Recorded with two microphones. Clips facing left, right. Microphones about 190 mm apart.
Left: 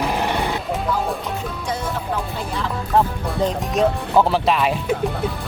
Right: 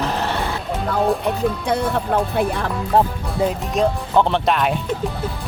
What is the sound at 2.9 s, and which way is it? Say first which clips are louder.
Speech: right 1 dB; 30° right (ahead or behind).